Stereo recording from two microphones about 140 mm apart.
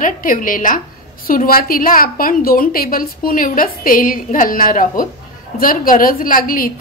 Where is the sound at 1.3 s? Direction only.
90° left; by 5.1 s 75° left (ahead or behind).